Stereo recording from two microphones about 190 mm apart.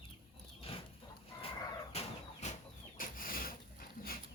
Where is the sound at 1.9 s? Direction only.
30° left (ahead or behind).